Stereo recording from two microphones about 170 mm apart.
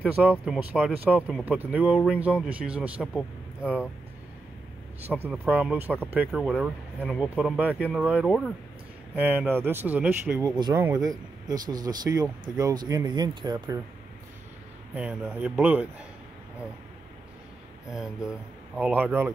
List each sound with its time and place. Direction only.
0.0 s a man's voice: 10° right (ahead or behind)
5.2 s a man's voice: 5° right (ahead or behind)
6.5 s speech: 5° left (ahead or behind)
9.1 s a man's voice: 10° right (ahead or behind)
10.4 s speech: 20° right (ahead or behind)
15.0 s a man's voice: 10° right (ahead or behind)
17.9 s a man's voice: 5° right (ahead or behind)